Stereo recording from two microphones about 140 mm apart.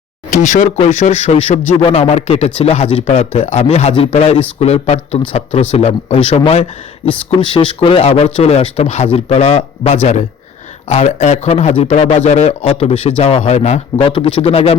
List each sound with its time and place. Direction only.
0.3 s speech: 60° left (ahead or behind)
14.0 s speech: 40° left (ahead or behind)